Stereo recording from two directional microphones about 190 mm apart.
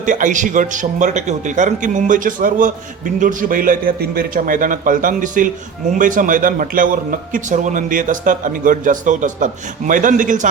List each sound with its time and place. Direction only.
0.0 s a man's voice: 40° right (ahead or behind)